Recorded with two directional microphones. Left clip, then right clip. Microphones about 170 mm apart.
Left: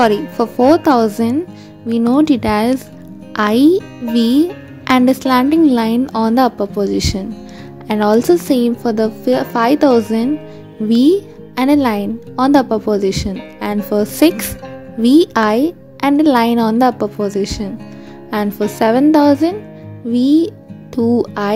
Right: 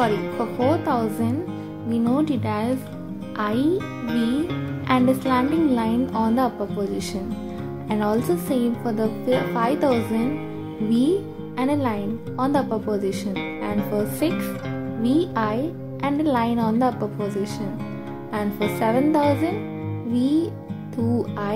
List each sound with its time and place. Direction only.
0.7 s speech: 60° left (ahead or behind)
4.8 s a child's voice: 60° left (ahead or behind)